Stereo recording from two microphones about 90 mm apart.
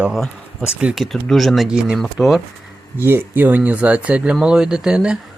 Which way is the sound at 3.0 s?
25° right (ahead or behind).